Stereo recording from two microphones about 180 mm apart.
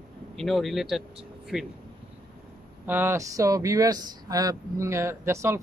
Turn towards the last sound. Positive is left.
turn(degrees=-15)  # may be behind; listen again after turning